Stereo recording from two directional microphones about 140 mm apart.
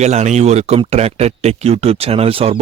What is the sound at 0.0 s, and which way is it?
Speech, 55° right (ahead or behind).